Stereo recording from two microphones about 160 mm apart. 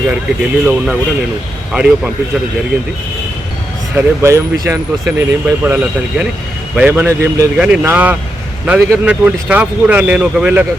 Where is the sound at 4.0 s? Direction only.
15° right (ahead or behind).